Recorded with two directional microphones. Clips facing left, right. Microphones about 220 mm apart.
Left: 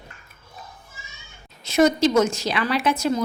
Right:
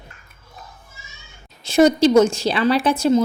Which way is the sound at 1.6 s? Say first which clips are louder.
Right 4 dB; 30° right (ahead or behind).